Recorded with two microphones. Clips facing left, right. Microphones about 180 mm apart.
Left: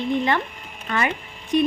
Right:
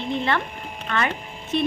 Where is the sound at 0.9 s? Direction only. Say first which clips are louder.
Left 1 dB; 10° left (ahead or behind).